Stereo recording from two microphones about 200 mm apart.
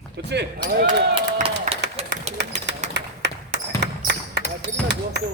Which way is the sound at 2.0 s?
30° right (ahead or behind).